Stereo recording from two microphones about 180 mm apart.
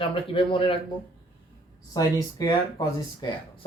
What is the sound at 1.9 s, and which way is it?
Speech, 20° left (ahead or behind).